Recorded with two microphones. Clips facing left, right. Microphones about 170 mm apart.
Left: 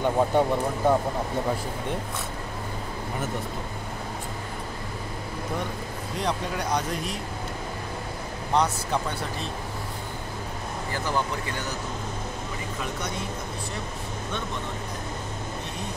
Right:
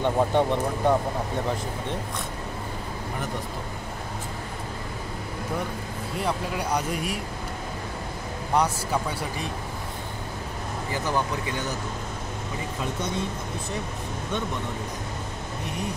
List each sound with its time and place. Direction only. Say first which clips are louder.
0.0 s speech: even; 5° left (ahead or behind)
6.1 s speech: even; 5° right (ahead or behind)
8.5 s speech: even; 10° right (ahead or behind)
10.9 s speech: right 1 dB; 15° right (ahead or behind)